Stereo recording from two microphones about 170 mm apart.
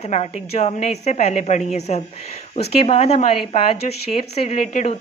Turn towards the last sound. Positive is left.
turn(degrees=45)  # may be behind; listen again after turning